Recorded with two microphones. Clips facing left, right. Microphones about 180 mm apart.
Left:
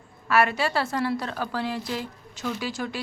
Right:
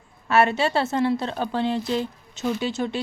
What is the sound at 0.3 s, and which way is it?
A woman's voice, 25° right (ahead or behind).